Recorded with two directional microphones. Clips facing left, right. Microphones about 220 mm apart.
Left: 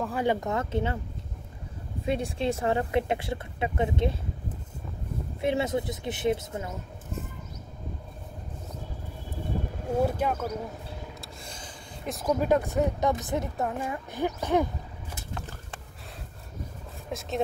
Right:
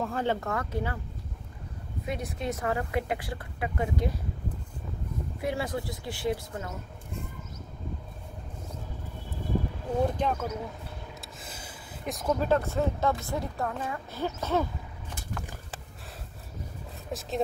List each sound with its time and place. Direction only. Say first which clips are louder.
0.0 s a woman's voice: left 2 dB; 10° left (ahead or behind)
2.0 s a woman's voice: left 5 dB; 30° left (ahead or behind)
5.4 s a woman's voice: left 5 dB; 25° left (ahead or behind)
10.0 s speech: left 1 dB; 10° left (ahead or behind)
11.1 s a sound: left 1 dB; 5° right (ahead or behind)
12.3 s speech: left 2 dB; 15° left (ahead or behind)
17.1 s speech: left 1 dB; centre (ahead or behind)